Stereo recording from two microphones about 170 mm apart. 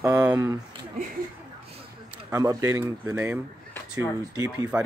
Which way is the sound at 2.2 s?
20° right (ahead or behind).